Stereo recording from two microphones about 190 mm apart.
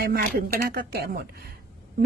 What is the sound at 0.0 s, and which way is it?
A woman's voice, 50° right (ahead or behind).